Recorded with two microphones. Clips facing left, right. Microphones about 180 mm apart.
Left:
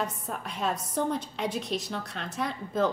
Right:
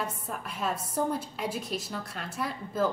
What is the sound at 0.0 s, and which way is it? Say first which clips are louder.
A woman's voice: left 2 dB; 5° right (ahead or behind).